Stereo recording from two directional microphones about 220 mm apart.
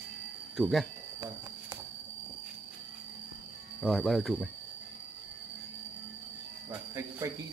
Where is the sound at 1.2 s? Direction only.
15° right (ahead or behind).